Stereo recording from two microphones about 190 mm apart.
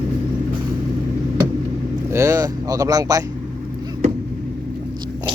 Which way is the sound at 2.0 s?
15° right (ahead or behind).